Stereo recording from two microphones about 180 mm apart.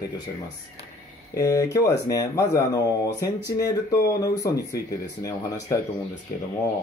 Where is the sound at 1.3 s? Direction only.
20° left (ahead or behind).